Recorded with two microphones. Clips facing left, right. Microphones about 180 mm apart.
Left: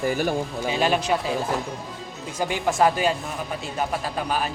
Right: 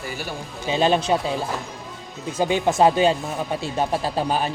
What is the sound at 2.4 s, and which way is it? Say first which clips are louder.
Speech: right 3 dB; 20° right (ahead or behind).